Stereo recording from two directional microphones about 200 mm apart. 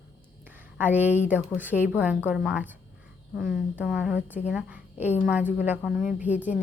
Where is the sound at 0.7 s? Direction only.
10° right (ahead or behind).